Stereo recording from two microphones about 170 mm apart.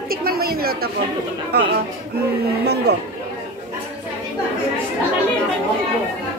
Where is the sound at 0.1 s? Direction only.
60° right (ahead or behind).